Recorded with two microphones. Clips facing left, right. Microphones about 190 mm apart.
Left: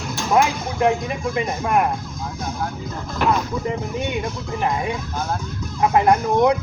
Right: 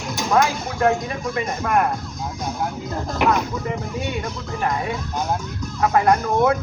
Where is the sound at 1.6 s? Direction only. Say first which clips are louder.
Even; 10° left (ahead or behind).